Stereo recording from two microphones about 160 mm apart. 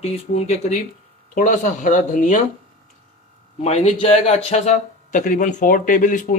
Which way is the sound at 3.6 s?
40° left (ahead or behind).